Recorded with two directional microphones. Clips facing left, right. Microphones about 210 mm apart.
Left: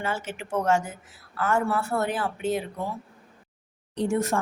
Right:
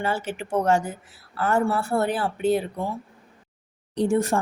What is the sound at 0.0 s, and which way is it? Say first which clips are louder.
Speech: right 4 dB; 35° right (ahead or behind).